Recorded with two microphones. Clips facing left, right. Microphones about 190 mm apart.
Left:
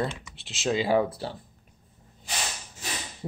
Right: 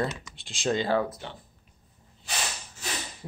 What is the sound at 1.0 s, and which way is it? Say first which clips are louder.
Speech: left 4 dB; 30° left (ahead or behind).